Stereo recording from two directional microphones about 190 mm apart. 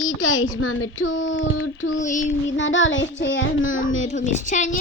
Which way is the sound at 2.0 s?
40° left (ahead or behind).